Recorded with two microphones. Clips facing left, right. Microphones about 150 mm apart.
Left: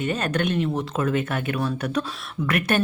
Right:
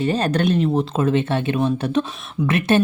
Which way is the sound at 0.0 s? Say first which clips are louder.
Right 5 dB; 35° right (ahead or behind).